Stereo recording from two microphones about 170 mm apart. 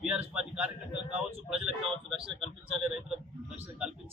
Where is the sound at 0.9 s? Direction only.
40° right (ahead or behind).